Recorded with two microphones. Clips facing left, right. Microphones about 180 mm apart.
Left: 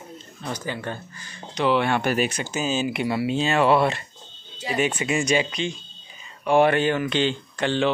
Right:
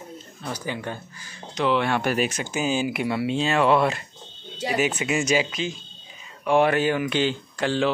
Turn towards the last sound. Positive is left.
turn(degrees=-5)  # may be behind; listen again after turning